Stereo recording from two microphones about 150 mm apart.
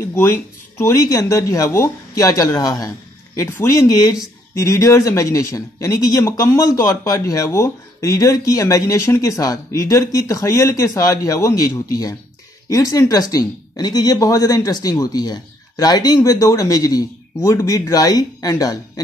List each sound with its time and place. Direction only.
0.1 s speech: 15° left (ahead or behind)